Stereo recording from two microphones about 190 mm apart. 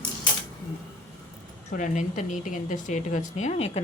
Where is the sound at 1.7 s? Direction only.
40° left (ahead or behind).